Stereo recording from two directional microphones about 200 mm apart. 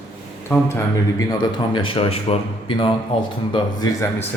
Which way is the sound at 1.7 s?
25° left (ahead or behind).